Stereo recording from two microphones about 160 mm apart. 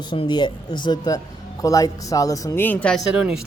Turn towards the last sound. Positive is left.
turn(degrees=-5)  # may be behind; listen again after turning